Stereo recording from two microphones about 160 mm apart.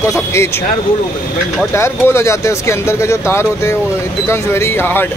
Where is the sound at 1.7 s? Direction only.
15° left (ahead or behind).